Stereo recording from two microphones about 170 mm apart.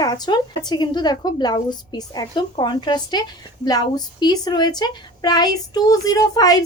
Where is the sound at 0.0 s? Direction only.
25° left (ahead or behind).